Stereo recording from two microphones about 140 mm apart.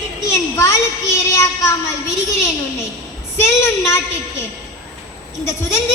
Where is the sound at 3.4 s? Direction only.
20° left (ahead or behind).